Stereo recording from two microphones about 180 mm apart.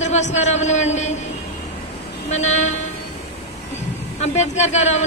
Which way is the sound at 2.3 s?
40° left (ahead or behind).